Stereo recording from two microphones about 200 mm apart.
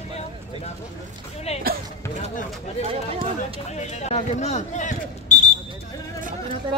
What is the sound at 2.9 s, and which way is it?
Speech, 30° right (ahead or behind).